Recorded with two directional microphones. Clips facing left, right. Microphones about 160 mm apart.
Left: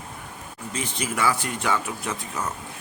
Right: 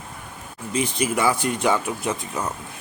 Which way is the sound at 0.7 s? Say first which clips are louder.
Right 6 dB; 15° right (ahead or behind).